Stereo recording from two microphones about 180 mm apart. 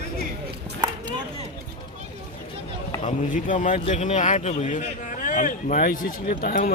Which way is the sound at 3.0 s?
45° left (ahead or behind).